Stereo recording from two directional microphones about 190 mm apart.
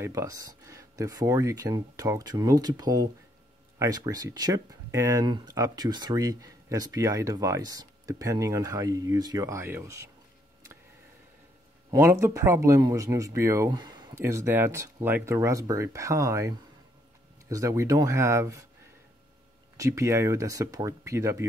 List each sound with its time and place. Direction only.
0.0 s speech: 15° right (ahead or behind)
11.9 s speech: 15° right (ahead or behind)
19.8 s speech: 15° right (ahead or behind)